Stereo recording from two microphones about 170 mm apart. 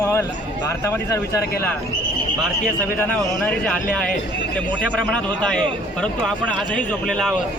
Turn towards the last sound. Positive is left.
turn(degrees=5)  # may be behind; listen again after turning